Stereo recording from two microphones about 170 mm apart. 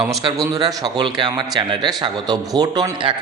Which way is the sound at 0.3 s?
25° right (ahead or behind).